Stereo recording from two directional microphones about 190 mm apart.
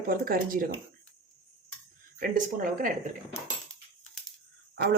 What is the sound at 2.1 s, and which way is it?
Speech, 50° right (ahead or behind).